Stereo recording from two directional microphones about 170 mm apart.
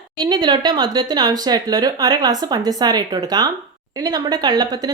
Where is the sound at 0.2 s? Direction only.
25° right (ahead or behind).